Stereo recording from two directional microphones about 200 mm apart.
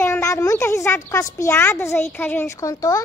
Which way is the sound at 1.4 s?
10° left (ahead or behind).